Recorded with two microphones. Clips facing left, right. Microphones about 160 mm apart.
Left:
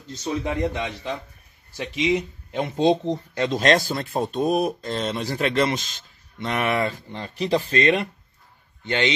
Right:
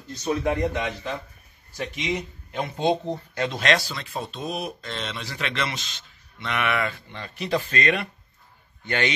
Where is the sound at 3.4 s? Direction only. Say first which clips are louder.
Left 4 dB; 40° left (ahead or behind).